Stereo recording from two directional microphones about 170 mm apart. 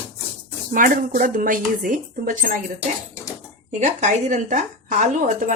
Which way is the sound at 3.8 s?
45° right (ahead or behind).